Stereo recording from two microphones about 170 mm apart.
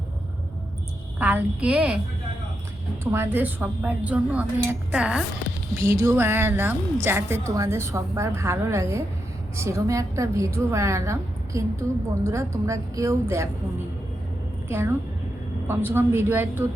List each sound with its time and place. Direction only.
1.2 s a woman's voice: 10° right (ahead or behind)
3.0 s a woman's voice: 15° right (ahead or behind)
5.8 s a woman's voice: 15° right (ahead or behind)
14.7 s a woman's voice: 15° right (ahead or behind)